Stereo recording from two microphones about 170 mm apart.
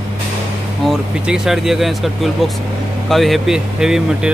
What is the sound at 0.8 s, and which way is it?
Speech, 5° right (ahead or behind).